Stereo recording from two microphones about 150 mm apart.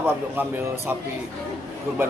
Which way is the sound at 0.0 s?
15° right (ahead or behind).